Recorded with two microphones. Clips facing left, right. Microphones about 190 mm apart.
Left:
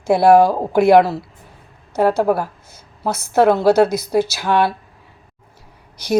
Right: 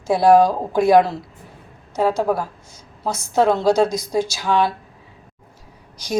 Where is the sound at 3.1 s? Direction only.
60° left (ahead or behind).